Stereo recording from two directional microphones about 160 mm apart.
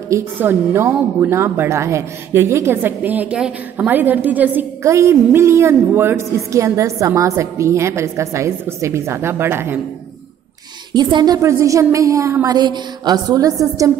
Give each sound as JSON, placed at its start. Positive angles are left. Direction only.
{"t": 0.1, "sound": "speech", "side_deg": -15}
{"t": 10.9, "sound": "a woman's voice", "side_deg": -30}